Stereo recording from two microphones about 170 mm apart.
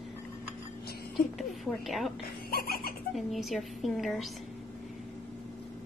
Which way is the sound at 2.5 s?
65° left (ahead or behind).